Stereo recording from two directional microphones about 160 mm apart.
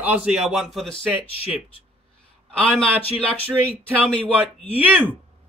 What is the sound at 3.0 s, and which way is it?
Speech, 35° left (ahead or behind).